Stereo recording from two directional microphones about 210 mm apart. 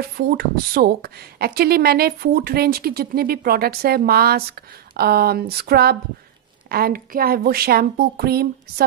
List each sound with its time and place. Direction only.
0.2 s speech: 45° right (ahead or behind)